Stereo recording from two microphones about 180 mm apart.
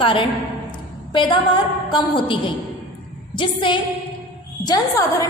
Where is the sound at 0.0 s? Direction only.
30° left (ahead or behind).